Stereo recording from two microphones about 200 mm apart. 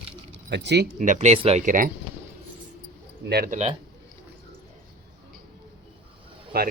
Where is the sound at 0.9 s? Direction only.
40° right (ahead or behind).